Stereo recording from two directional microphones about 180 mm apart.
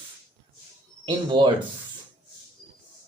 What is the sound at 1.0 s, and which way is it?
Speech, 25° right (ahead or behind).